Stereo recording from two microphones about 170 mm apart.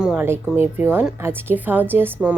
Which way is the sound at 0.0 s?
10° right (ahead or behind).